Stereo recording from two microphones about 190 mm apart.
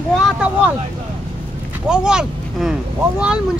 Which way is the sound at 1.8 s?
5° right (ahead or behind).